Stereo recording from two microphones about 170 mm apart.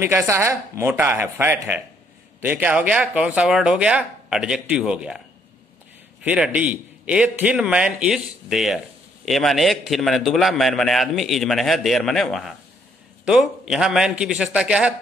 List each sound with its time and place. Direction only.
0.0 s speech: 15° right (ahead or behind)
6.2 s a man's voice: 5° right (ahead or behind)